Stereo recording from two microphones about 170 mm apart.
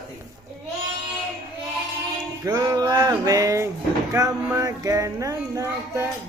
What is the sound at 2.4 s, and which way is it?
Music, 20° right (ahead or behind).